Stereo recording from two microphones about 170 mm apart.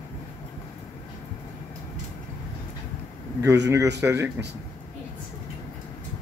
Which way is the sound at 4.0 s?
15° right (ahead or behind).